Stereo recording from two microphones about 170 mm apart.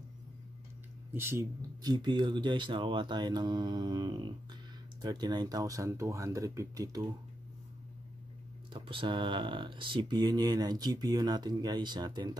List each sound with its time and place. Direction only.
1.1 s speech: 15° right (ahead or behind)
8.7 s speech: 30° right (ahead or behind)